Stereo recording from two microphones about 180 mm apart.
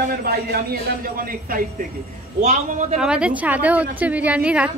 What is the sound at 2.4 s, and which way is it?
Speech, 40° right (ahead or behind).